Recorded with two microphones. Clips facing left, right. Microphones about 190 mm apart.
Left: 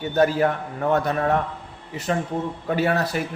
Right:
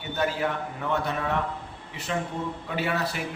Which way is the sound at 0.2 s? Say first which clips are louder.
Left 8 dB; 45° left (ahead or behind).